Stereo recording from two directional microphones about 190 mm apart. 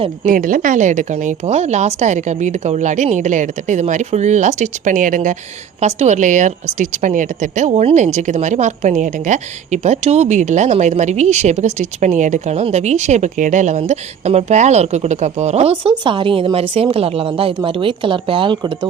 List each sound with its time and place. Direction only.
0.3 s speech: 45° right (ahead or behind); by 18.9 s 25° right (ahead or behind)